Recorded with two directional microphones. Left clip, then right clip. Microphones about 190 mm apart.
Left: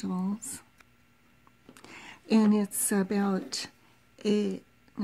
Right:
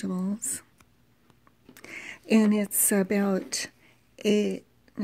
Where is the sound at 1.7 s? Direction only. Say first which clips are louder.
Right 7 dB; 5° right (ahead or behind).